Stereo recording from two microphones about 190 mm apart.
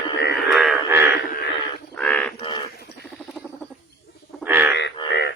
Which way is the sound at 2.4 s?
25° left (ahead or behind).